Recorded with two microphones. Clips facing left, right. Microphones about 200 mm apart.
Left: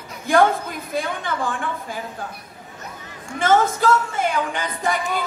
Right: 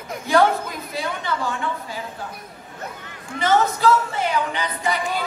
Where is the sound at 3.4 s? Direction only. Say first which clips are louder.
Left 1 dB; 50° left (ahead or behind).